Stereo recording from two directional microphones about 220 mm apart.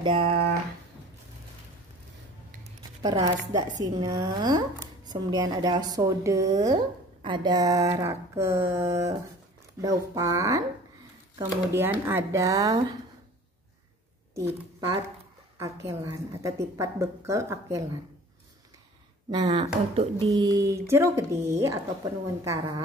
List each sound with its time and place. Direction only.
0.0 s speech: 25° right (ahead or behind)
3.0 s speech: 15° right (ahead or behind)
15.6 s speech: 15° right (ahead or behind)
19.5 s speech: 20° right (ahead or behind)